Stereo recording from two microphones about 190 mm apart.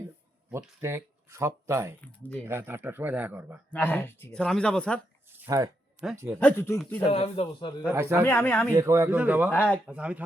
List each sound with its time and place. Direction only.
0.5 s speech: 10° right (ahead or behind)
3.7 s speech: 10° left (ahead or behind)
5.3 s a sound: 15° right (ahead or behind)
6.1 s speech: 15° right (ahead or behind)
6.4 s speech: 10° left (ahead or behind)
7.1 s a man's voice: 30° left (ahead or behind)
7.9 s speech: 10° right (ahead or behind)
8.2 s speech: 10° left (ahead or behind)
8.7 s speech: 15° right (ahead or behind)
9.5 s speech: 10° left (ahead or behind)
9.8 s speech: 5° right (ahead or behind)